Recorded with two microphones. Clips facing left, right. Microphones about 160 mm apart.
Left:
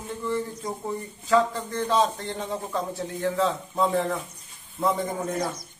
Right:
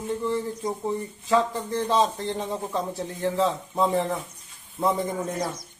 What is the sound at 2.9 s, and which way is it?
Speech, 25° right (ahead or behind).